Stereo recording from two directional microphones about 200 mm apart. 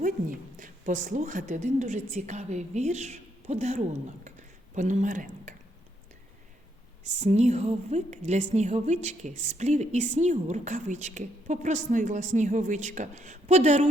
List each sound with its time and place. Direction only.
0.0 s a woman's voice: 40° right (ahead or behind)
7.2 s a woman's voice: 35° right (ahead or behind)